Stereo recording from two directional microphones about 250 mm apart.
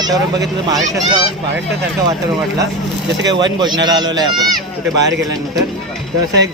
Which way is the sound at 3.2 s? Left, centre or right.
Centre.